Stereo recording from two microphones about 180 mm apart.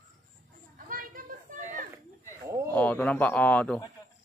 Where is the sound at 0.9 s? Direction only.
50° right (ahead or behind).